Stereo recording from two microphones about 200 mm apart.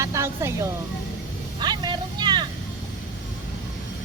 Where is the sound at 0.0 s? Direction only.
15° right (ahead or behind).